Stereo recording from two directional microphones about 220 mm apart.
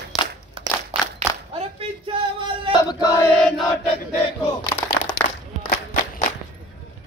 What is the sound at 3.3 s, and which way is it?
Chant, 5° left (ahead or behind).